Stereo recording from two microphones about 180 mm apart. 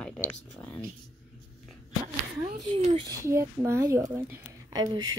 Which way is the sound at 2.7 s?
40° right (ahead or behind).